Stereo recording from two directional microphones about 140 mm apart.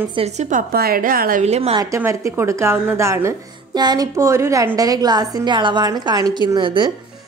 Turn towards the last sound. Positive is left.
turn(degrees=-35)  # may be behind; listen again after turning